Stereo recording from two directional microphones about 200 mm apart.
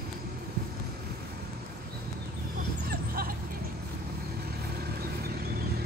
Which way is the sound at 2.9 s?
45° right (ahead or behind).